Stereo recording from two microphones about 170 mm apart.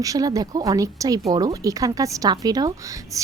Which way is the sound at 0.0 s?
20° right (ahead or behind).